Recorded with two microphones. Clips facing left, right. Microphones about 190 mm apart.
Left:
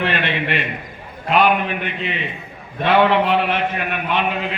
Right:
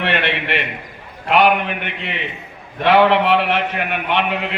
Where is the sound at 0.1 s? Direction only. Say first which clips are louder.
Right 1 dB; 75° right (ahead or behind).